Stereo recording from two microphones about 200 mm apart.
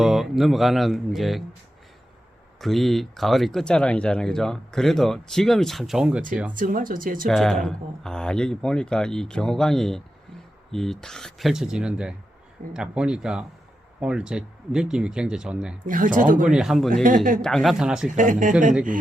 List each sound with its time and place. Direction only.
0.0 s speech: centre (ahead or behind)
2.6 s speech: centre (ahead or behind)
6.5 s speech: 40° right (ahead or behind)
7.3 s speech: centre (ahead or behind)
15.9 s speech: 40° right (ahead or behind)
16.5 s speech: 5° right (ahead or behind)
16.9 s speech: 40° right (ahead or behind)
17.4 s speech: centre (ahead or behind)
18.1 s speech: 40° right (ahead or behind)